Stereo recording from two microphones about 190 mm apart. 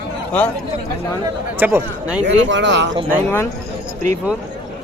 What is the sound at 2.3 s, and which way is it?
Speech, 70° right (ahead or behind).